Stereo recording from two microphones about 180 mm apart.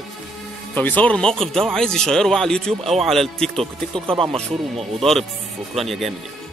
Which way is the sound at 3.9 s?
30° right (ahead or behind).